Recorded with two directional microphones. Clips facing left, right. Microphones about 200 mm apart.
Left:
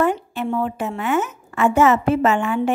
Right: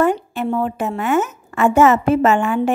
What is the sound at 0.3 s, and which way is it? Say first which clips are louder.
A woman's voice: right 2 dB; 45° right (ahead or behind).